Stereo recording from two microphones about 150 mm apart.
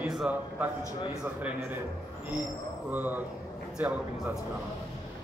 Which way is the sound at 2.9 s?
10° right (ahead or behind).